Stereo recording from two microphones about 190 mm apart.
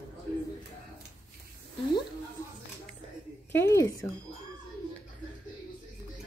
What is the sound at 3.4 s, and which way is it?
Speech, 15° left (ahead or behind).